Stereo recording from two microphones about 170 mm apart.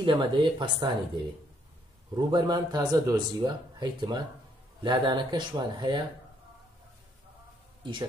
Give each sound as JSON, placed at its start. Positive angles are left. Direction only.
{"t": 0.0, "sound": "speech", "side_deg": -30}